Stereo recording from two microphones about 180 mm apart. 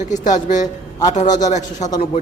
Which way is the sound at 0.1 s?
45° left (ahead or behind).